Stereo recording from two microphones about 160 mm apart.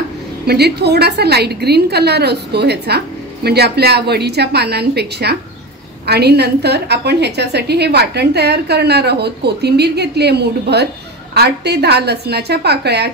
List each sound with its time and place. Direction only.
0.5 s a woman's voice: 90° right